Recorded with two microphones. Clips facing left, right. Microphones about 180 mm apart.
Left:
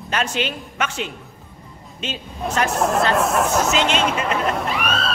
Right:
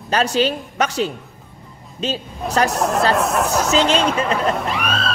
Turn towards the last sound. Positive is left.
turn(degrees=0)  # may be behind; listen again after turning